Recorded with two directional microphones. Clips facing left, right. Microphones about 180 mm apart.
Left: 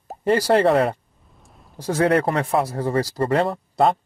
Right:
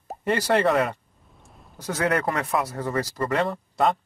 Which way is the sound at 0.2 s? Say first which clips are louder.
Left 5 dB; 35° left (ahead or behind).